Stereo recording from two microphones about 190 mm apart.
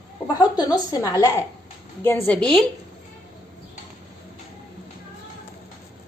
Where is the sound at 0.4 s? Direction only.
20° left (ahead or behind).